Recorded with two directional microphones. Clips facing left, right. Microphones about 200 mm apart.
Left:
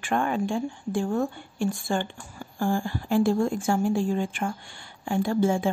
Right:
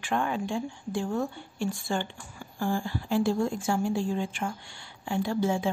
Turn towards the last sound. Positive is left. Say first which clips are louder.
# left 4 dB
turn(degrees=50)  # may be behind; listen again after turning